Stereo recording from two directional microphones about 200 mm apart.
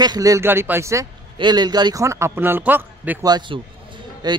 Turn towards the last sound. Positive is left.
turn(degrees=-20)  # may be behind; listen again after turning